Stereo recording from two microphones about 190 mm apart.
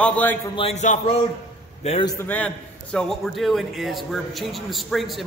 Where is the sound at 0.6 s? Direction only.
35° left (ahead or behind).